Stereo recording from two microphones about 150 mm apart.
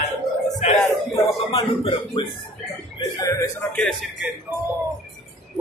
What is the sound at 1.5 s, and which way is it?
Speech, 35° left (ahead or behind).